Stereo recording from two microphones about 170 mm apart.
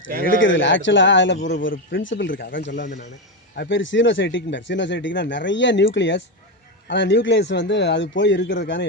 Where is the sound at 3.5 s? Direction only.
80° left.